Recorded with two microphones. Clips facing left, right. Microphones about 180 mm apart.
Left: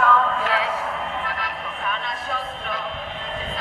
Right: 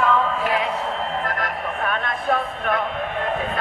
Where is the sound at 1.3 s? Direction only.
50° right (ahead or behind).